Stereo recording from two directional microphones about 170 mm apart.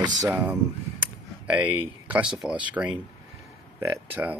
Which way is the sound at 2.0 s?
5° right (ahead or behind).